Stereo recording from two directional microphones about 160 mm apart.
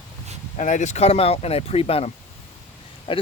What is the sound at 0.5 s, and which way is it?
Speech, 50° left (ahead or behind).